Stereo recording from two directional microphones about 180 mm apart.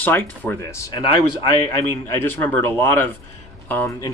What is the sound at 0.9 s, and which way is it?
Speech, 25° left (ahead or behind).